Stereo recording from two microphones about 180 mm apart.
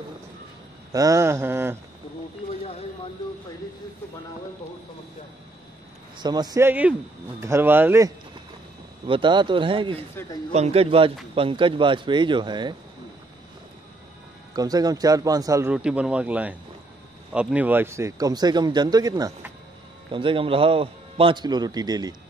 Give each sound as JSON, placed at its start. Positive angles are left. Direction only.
{"t": 0.9, "sound": "speech", "side_deg": -20}
{"t": 6.1, "sound": "speech", "side_deg": -25}
{"t": 9.0, "sound": "a man's voice", "side_deg": -30}
{"t": 14.5, "sound": "a man's voice", "side_deg": -20}
{"t": 15.7, "sound": "a man's voice", "side_deg": -5}